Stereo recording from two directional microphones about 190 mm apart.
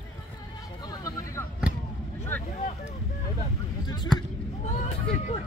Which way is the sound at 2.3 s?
10° left (ahead or behind).